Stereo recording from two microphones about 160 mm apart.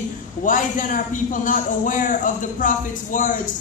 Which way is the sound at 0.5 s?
55° left (ahead or behind).